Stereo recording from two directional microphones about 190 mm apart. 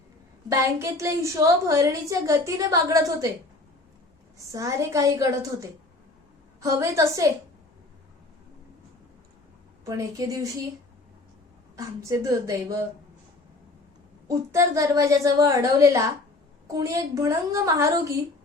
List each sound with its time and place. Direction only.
0.4 s a woman's voice: 15° right (ahead or behind)
4.4 s a woman's voice: 15° right (ahead or behind)
6.6 s a woman's voice: 15° right (ahead or behind)
9.8 s a woman's voice: 15° right (ahead or behind)
11.8 s a woman's voice: 15° right (ahead or behind)
14.3 s a woman's voice: 15° right (ahead or behind)